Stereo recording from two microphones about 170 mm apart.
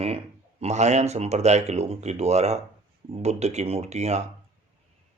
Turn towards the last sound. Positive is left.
turn(degrees=-40)  # may be behind; listen again after turning